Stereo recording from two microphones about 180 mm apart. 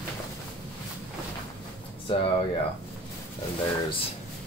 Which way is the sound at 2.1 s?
30° left (ahead or behind).